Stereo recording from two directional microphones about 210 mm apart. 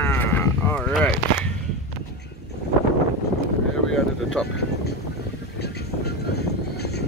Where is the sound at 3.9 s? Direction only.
5° left (ahead or behind).